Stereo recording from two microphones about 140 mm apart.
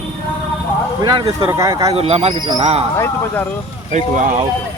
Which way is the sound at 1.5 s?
20° right (ahead or behind).